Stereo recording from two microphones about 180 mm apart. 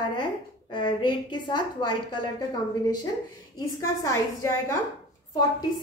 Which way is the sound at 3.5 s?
20° left (ahead or behind).